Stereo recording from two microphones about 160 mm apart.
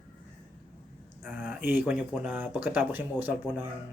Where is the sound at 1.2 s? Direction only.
10° right (ahead or behind).